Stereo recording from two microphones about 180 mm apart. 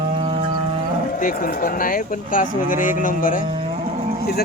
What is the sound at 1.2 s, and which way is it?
A man's voice, 50° left (ahead or behind).